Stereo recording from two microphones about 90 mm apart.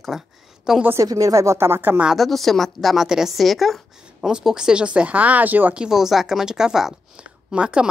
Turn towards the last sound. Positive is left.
turn(degrees=-10)  # may be behind; listen again after turning